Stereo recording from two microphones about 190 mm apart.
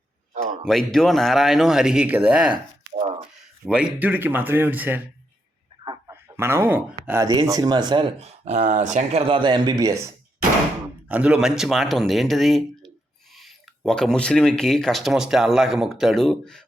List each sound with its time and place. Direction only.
0.6 s speech: centre (ahead or behind)
2.5 s a sound: 35° right (ahead or behind)
3.7 s speech: 5° right (ahead or behind)
5.8 s a sound: 20° right (ahead or behind)
7.4 s speech: 20° right (ahead or behind)
11.1 s speech: 5° right (ahead or behind)